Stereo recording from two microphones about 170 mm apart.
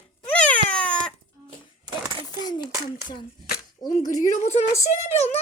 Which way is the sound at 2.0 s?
30° right (ahead or behind).